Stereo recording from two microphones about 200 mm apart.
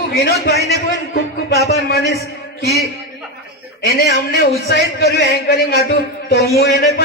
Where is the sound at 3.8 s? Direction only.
55° left (ahead or behind).